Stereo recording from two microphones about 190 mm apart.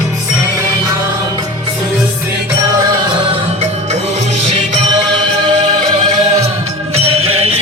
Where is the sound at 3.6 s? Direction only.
35° right (ahead or behind).